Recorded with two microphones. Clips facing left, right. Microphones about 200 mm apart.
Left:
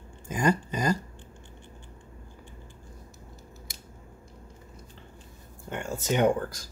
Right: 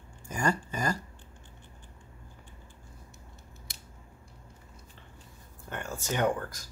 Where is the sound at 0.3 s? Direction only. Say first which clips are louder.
Left 4 dB; 20° left (ahead or behind).